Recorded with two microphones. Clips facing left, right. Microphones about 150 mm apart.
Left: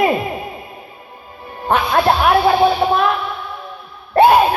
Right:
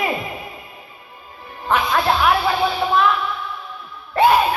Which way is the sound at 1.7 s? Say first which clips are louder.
Left 4 dB; 50° left (ahead or behind).